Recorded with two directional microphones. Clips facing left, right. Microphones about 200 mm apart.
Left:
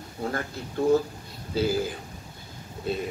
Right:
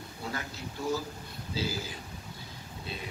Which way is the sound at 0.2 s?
50° left (ahead or behind).